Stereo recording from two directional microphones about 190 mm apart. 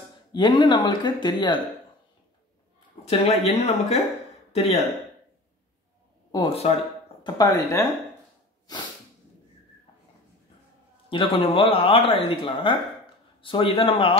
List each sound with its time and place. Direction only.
0.3 s speech: 20° left (ahead or behind)
3.1 s speech: 35° left (ahead or behind)
6.3 s speech: 25° left (ahead or behind)
7.3 s speech: 15° left (ahead or behind)
11.1 s speech: 25° left (ahead or behind)